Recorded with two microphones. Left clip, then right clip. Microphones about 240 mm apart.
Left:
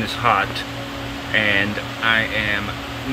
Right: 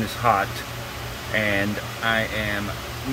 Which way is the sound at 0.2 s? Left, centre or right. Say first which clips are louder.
Left 2 dB; centre.